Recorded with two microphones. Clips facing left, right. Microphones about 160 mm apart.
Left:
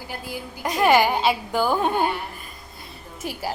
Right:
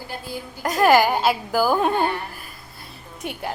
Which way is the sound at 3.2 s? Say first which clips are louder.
Even; centre (ahead or behind).